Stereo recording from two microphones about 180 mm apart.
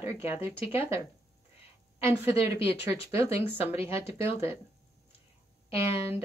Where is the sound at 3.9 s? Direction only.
15° right (ahead or behind).